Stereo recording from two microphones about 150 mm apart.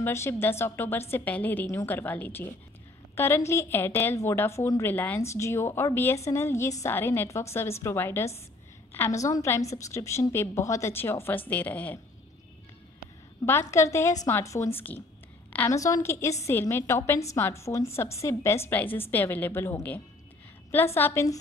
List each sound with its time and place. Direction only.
0.0 s a woman's voice: 15° left (ahead or behind)
13.5 s a woman's voice: 15° left (ahead or behind)